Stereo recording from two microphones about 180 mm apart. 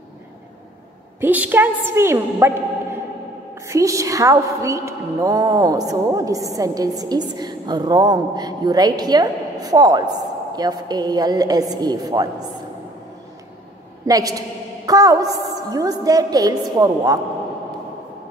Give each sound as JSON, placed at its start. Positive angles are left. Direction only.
{"t": 1.2, "sound": "a woman's voice", "side_deg": -10}
{"t": 3.5, "sound": "a woman's voice", "side_deg": -15}
{"t": 14.0, "sound": "a woman's voice", "side_deg": -20}